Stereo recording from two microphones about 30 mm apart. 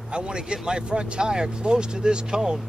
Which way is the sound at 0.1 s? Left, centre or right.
Right.